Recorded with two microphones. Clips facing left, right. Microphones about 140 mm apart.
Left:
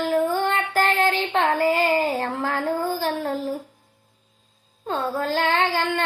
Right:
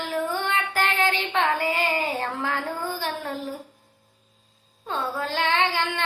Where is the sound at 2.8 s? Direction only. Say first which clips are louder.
Left 5 dB; 40° left (ahead or behind).